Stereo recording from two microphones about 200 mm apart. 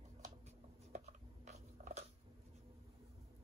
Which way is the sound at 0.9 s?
35° right (ahead or behind).